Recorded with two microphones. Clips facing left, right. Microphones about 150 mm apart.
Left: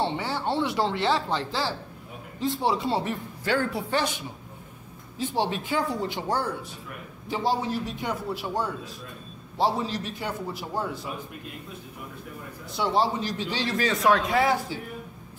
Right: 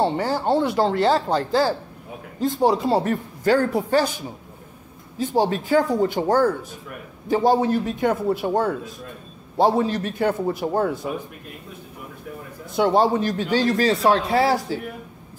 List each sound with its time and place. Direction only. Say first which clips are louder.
0.0 s speech: right 6 dB; 40° right (ahead or behind)
12.7 s speech: right 7 dB; 50° right (ahead or behind); by 14.8 s 35° right (ahead or behind)